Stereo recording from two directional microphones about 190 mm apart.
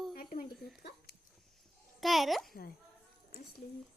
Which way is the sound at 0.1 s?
50° left (ahead or behind).